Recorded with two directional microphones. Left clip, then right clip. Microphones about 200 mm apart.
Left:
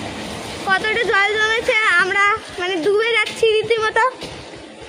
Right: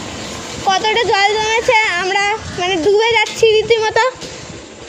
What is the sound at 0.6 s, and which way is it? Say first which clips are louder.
Speech: right 4 dB; 20° right (ahead or behind).